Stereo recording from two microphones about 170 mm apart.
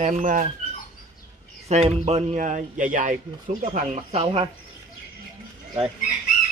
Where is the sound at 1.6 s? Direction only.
40° right (ahead or behind).